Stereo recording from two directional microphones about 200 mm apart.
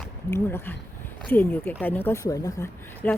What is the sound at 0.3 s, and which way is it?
A woman's voice, 15° left (ahead or behind).